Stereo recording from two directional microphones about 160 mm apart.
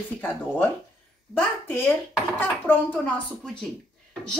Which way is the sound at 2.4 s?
10° left (ahead or behind).